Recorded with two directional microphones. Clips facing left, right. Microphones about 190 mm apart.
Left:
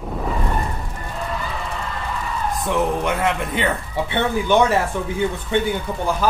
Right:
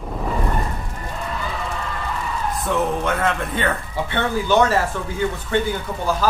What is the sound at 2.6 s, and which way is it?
A man's voice, 15° left (ahead or behind).